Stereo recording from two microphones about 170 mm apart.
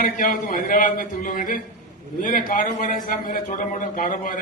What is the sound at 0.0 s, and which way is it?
A man's voice, 50° left (ahead or behind).